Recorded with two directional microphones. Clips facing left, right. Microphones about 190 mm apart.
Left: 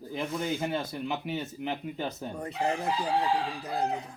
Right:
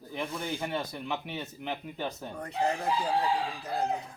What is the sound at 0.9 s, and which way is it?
Speech, 5° left (ahead or behind).